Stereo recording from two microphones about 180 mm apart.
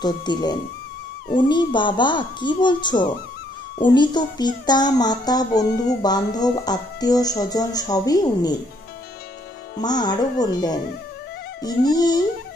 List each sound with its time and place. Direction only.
0.0 s a child's voice: 25° left (ahead or behind)
9.8 s a child's voice: 20° left (ahead or behind)